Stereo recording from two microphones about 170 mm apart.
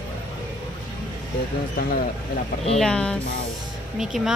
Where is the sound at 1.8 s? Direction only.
60° left (ahead or behind).